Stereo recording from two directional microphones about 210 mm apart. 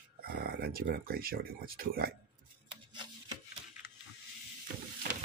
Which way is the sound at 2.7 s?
20° right (ahead or behind).